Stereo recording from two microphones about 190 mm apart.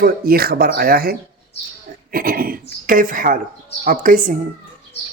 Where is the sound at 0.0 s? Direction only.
50° right (ahead or behind).